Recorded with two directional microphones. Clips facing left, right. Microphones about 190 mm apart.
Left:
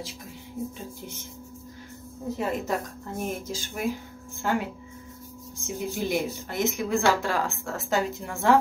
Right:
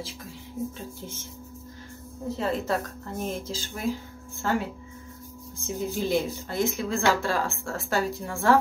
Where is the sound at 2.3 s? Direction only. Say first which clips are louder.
Right 1 dB; 15° left (ahead or behind).